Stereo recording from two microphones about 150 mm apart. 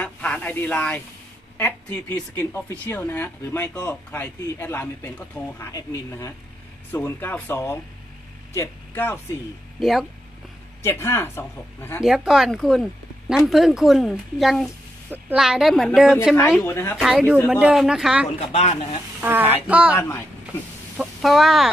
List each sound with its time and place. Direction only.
0.0 s snake: 10° left (ahead or behind)
1.6 s speech: 15° left (ahead or behind)
9.8 s speech: centre (ahead or behind)
10.8 s speech: 15° left (ahead or behind)
12.0 s speech: 5° right (ahead or behind)
16.6 s speech: 15° left (ahead or behind)
17.5 s speech: 5° right (ahead or behind)
18.5 s speech: 45° left (ahead or behind)
19.2 s child singing: 15° right (ahead or behind)
20.0 s speech: 15° left (ahead or behind)
21.0 s speech: centre (ahead or behind)